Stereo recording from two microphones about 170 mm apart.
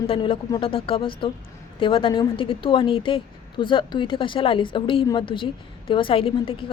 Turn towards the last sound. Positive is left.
turn(degrees=35)  # may be behind; listen again after turning